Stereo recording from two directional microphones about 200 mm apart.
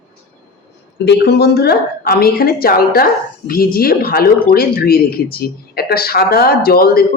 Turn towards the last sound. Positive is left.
turn(degrees=50)  # may be behind; listen again after turning